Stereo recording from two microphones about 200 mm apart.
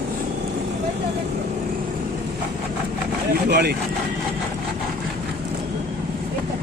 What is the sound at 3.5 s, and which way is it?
Speech, 55° right (ahead or behind).